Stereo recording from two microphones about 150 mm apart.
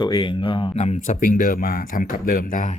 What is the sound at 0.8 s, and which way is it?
Speech, 55° left (ahead or behind).